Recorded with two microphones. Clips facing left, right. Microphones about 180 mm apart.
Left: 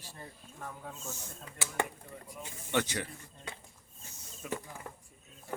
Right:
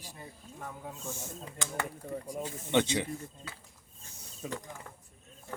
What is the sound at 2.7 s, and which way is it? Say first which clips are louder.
Speech: right 5 dB; 20° right (ahead or behind).